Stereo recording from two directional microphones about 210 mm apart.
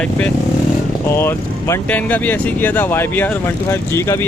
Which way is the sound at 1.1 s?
10° left (ahead or behind).